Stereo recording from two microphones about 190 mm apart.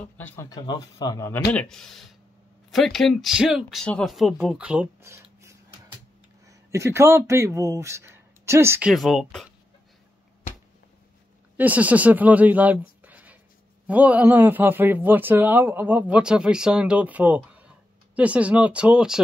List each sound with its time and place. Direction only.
0.2 s a man's voice: 10° left (ahead or behind)
1.5 s speech: 5° left (ahead or behind); by 8.9 s 10° right (ahead or behind)
8.9 s speech: centre (ahead or behind)
11.5 s a man's voice: 10° right (ahead or behind)
13.0 s a sound: 10° right (ahead or behind)
13.8 s a man's voice: 10° right (ahead or behind)